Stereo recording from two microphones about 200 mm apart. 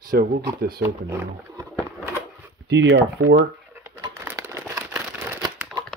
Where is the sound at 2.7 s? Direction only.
60° right (ahead or behind).